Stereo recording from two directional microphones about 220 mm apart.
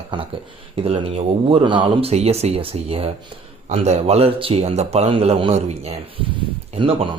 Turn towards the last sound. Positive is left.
turn(degrees=-25)  # may be behind; listen again after turning